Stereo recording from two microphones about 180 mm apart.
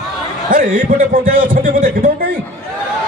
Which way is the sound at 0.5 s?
50° right (ahead or behind).